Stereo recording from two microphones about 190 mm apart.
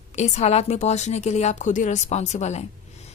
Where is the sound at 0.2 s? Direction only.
35° left (ahead or behind).